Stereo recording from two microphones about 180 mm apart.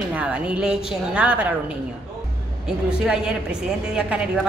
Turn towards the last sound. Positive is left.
turn(degrees=-5)  # may be behind; listen again after turning